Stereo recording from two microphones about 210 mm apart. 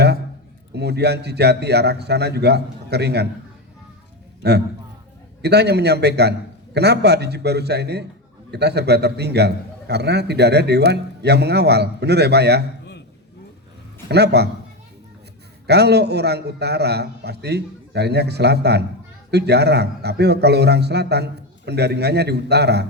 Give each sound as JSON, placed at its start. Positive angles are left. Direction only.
{"t": 0.7, "sound": "a man's voice", "side_deg": -50}
{"t": 4.4, "sound": "a man's voice", "side_deg": -50}
{"t": 14.1, "sound": "a man's voice", "side_deg": -50}
{"t": 15.6, "sound": "a man's voice", "side_deg": -50}